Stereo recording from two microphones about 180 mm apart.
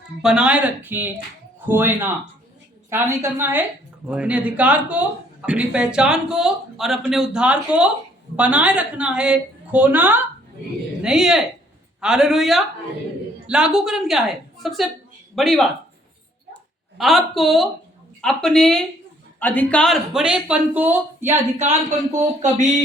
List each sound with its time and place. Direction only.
0.2 s a woman's voice: 5° right (ahead or behind)
17.0 s speech: centre (ahead or behind)
21.6 s speech: 45° right (ahead or behind)